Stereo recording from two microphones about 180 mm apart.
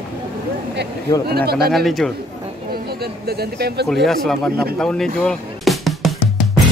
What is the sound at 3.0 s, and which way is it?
Speech, 60° right (ahead or behind).